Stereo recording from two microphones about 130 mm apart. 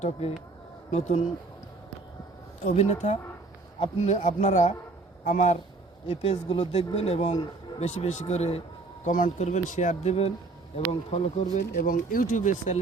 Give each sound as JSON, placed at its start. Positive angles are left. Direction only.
{"t": 0.9, "sound": "speech", "side_deg": 60}
{"t": 2.6, "sound": "speech", "side_deg": 60}
{"t": 6.1, "sound": "speech", "side_deg": 50}
{"t": 9.0, "sound": "speech", "side_deg": 80}